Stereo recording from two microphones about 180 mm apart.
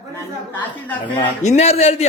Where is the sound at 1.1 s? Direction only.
35° left (ahead or behind).